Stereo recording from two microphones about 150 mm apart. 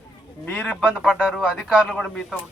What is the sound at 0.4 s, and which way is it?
Speech, 10° left (ahead or behind).